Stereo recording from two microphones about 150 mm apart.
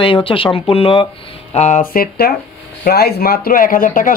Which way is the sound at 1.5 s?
50° left (ahead or behind).